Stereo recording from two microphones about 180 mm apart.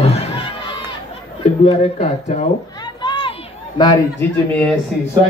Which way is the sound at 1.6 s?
35° left (ahead or behind).